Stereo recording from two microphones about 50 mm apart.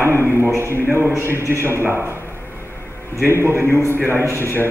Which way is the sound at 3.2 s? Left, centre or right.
Right.